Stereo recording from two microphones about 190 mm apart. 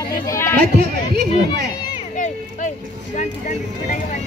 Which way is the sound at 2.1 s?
40° left (ahead or behind).